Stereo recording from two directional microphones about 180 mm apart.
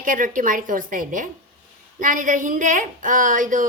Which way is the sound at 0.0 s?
50° right (ahead or behind).